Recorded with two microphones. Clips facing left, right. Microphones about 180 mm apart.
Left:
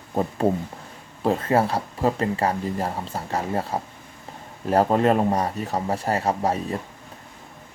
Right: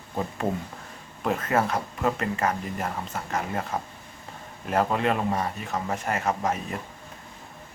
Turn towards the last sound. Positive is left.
turn(degrees=35)  # may be behind; listen again after turning